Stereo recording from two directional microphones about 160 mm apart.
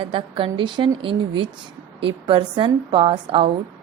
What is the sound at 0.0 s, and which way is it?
A woman's voice, 35° right (ahead or behind).